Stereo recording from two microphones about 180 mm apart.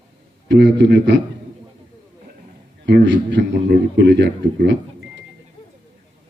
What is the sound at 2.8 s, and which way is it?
A man's voice, 75° right (ahead or behind).